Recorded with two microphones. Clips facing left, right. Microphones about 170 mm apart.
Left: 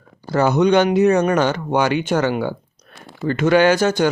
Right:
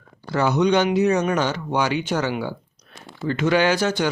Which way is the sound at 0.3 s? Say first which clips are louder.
Left 4 dB; 45° left (ahead or behind).